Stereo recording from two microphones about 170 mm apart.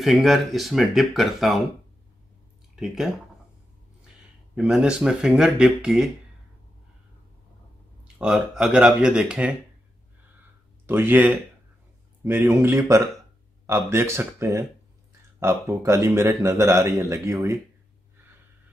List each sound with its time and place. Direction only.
0.0 s speech: centre (ahead or behind)
2.7 s speech: centre (ahead or behind)
4.6 s speech: 5° right (ahead or behind)
8.2 s speech: 5° right (ahead or behind)
10.9 s a man's voice: 10° right (ahead or behind)